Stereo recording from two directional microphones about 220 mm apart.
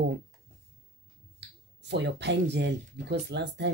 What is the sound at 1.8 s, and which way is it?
Speech, 50° right (ahead or behind).